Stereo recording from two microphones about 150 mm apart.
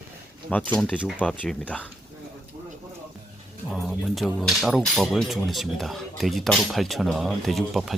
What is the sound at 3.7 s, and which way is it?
Speech, centre (ahead or behind).